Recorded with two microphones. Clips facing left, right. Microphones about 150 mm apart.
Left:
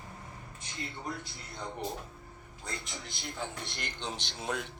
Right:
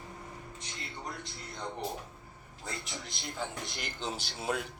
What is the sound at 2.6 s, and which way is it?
A man's voice, centre (ahead or behind).